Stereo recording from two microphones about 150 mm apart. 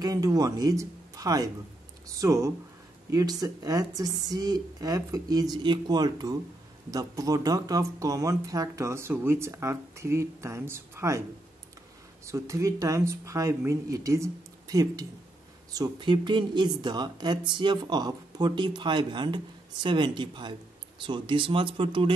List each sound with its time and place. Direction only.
0.0 s speech: 25° right (ahead or behind)
12.3 s speech: 20° right (ahead or behind); by 22.1 s 35° right (ahead or behind)